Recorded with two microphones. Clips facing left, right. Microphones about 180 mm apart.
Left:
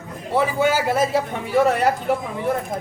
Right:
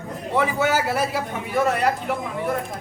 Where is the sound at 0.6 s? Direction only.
20° left (ahead or behind).